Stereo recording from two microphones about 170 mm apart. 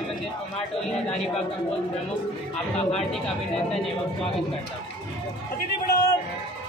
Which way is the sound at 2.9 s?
5° left (ahead or behind).